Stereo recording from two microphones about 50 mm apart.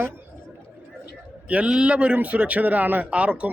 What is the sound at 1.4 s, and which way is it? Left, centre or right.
A man's voice, right.